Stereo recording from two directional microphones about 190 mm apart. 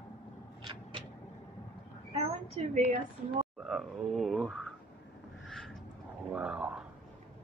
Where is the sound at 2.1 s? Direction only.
35° right (ahead or behind).